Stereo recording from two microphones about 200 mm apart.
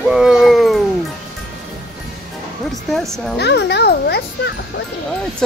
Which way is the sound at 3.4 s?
60° left (ahead or behind).